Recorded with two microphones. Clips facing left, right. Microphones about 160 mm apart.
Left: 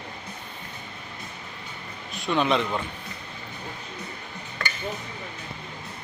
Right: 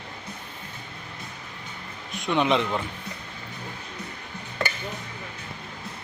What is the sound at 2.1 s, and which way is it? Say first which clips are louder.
Speech: right 1 dB; 20° right (ahead or behind).